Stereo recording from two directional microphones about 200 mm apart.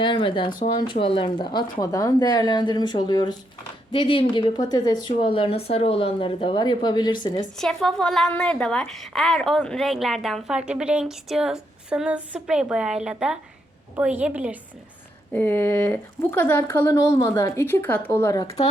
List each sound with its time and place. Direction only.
0.0 s a woman's voice: 25° left (ahead or behind)
7.5 s a woman's voice: centre (ahead or behind)
15.3 s speech: 10° left (ahead or behind)